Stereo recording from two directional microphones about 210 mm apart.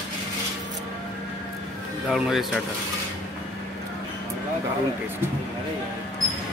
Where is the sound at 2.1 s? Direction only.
Centre (ahead or behind).